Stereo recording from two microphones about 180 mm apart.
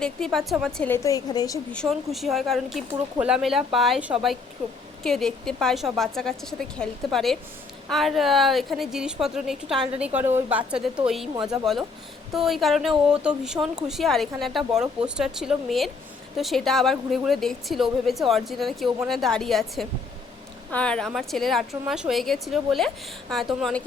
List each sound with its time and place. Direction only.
0.0 s a woman's voice: centre (ahead or behind); by 1.5 s 20° left (ahead or behind)
1.7 s speech: centre (ahead or behind)